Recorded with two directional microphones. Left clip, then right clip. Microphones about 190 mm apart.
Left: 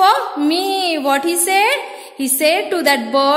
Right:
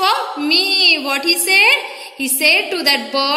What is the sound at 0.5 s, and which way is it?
A woman's voice, 60° left (ahead or behind).